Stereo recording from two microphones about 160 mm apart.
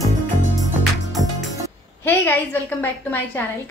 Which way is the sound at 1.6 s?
15° left (ahead or behind).